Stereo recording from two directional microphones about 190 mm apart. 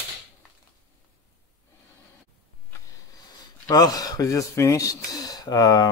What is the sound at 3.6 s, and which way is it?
Speech, 20° left (ahead or behind).